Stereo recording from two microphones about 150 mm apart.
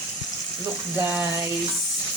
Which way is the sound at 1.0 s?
15° right (ahead or behind).